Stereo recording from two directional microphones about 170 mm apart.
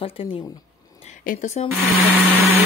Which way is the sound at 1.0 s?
45° left (ahead or behind).